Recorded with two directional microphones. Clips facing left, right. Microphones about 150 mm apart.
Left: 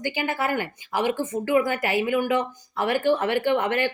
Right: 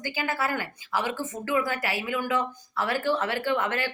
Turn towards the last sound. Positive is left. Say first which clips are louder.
# left 5 dB
turn(degrees=20)  # may be behind; listen again after turning